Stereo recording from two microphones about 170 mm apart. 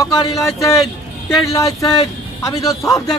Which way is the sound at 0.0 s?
20° left (ahead or behind).